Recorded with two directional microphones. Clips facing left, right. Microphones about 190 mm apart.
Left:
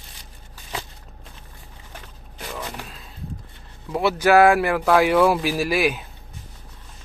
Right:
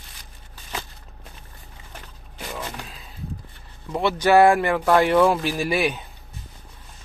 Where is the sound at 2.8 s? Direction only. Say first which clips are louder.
Left 1 dB; centre (ahead or behind).